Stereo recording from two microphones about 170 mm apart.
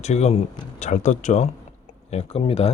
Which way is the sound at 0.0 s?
40° left (ahead or behind).